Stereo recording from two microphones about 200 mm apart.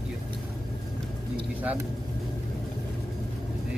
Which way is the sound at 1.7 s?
5° right (ahead or behind).